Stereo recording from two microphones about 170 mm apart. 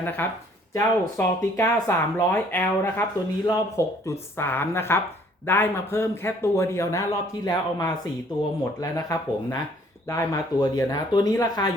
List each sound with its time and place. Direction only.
0.0 s speech: 10° left (ahead or behind)